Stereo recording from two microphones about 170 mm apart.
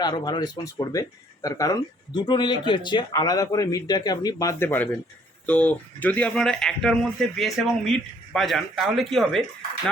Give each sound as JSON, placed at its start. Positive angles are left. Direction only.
{"t": 0.0, "sound": "speech", "side_deg": 25}